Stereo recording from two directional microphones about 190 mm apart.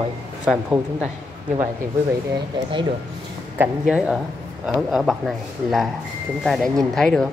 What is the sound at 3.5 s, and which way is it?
Speech, 10° right (ahead or behind).